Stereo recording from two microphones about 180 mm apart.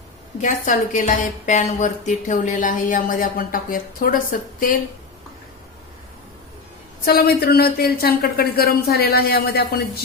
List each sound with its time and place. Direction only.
0.4 s a woman's voice: 45° left (ahead or behind)
7.0 s speech: 55° left (ahead or behind)